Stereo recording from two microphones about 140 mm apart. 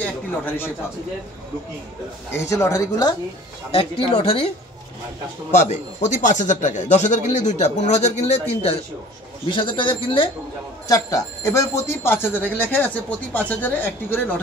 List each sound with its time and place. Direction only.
2.3 s a woman's voice: 20° left (ahead or behind)
3.7 s speech: 40° left (ahead or behind)
5.5 s a man's voice: 60° left (ahead or behind)
9.5 s speech: 35° left (ahead or behind)
10.9 s speech: 25° left (ahead or behind)